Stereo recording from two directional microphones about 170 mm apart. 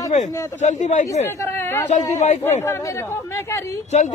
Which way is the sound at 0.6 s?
45° left (ahead or behind).